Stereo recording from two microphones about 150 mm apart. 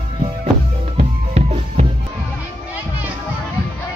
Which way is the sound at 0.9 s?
45° right (ahead or behind).